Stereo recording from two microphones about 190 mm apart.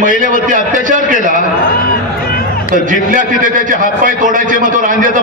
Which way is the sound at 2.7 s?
45° right (ahead or behind).